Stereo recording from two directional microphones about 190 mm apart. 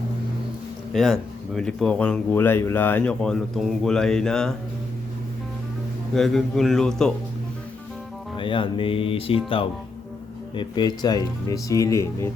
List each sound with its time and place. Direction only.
0.9 s speech: centre (ahead or behind)
6.1 s speech: centre (ahead or behind)
8.4 s speech: 25° left (ahead or behind)